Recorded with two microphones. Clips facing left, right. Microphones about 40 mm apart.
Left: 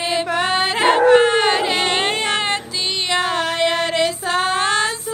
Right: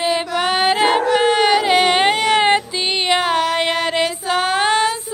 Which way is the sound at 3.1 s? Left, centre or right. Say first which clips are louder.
Right 3 dB; right.